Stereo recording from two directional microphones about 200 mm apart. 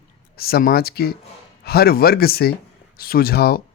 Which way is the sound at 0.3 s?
50° left (ahead or behind).